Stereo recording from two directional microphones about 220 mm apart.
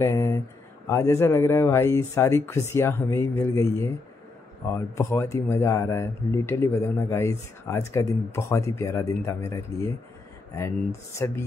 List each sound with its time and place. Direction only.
0.0 s speech: 10° left (ahead or behind)
11.1 s speech: 15° left (ahead or behind)